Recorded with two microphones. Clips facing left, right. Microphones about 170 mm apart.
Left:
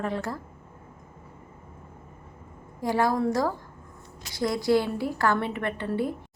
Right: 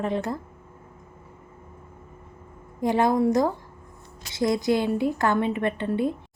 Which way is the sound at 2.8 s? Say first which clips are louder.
Right 3 dB; 20° right (ahead or behind).